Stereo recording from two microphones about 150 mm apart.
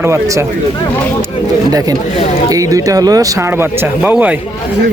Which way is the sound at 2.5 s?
20° right (ahead or behind).